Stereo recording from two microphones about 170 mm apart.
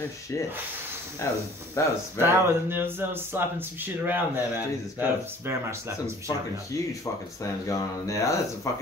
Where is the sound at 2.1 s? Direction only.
15° right (ahead or behind).